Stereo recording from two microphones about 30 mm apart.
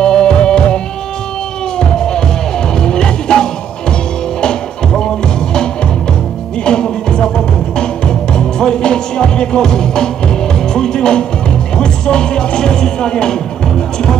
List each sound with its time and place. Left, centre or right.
0.0 s music: left
1.8 s music: left
6.6 s music: left